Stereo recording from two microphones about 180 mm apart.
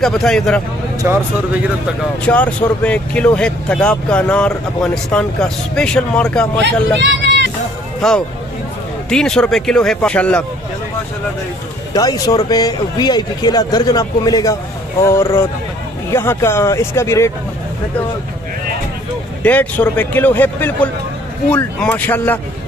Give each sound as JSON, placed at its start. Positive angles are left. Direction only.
{"t": 0.0, "sound": "speech", "side_deg": 5}
{"t": 1.0, "sound": "speech", "side_deg": -10}
{"t": 2.2, "sound": "speech", "side_deg": 5}
{"t": 6.6, "sound": "speech", "side_deg": -80}
{"t": 8.0, "sound": "speech", "side_deg": 5}
{"t": 11.9, "sound": "speech", "side_deg": 20}
{"t": 19.4, "sound": "speech", "side_deg": 10}